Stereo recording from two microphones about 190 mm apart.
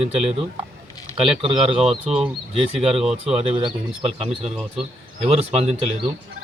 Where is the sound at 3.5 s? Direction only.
30° right (ahead or behind).